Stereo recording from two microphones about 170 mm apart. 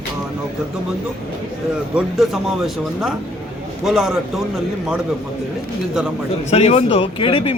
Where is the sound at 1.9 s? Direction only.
Centre (ahead or behind).